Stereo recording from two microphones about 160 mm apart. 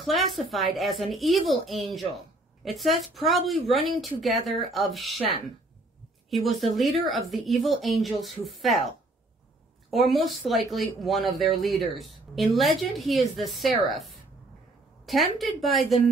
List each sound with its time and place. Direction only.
0.0 s speech: centre (ahead or behind)
6.3 s speech: centre (ahead or behind)
9.8 s speech: centre (ahead or behind)